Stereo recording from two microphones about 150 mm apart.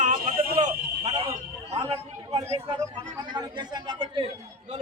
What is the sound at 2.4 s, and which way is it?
Speech, 45° right (ahead or behind).